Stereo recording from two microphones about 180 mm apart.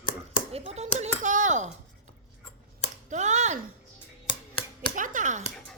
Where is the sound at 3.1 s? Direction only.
40° right (ahead or behind).